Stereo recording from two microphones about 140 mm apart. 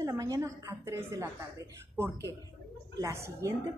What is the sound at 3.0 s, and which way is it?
Speech, 20° right (ahead or behind).